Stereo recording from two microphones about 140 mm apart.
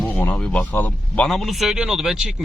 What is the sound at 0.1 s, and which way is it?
A man's voice, 10° left (ahead or behind).